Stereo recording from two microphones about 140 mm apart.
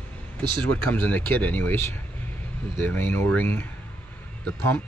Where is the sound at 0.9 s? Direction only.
15° left (ahead or behind).